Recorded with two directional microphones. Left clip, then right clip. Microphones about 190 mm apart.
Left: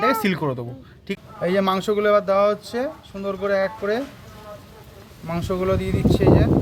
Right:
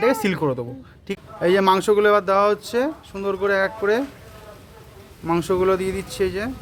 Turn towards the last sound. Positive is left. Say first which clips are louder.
# left 6 dB
turn(degrees=-40)  # may be behind; listen again after turning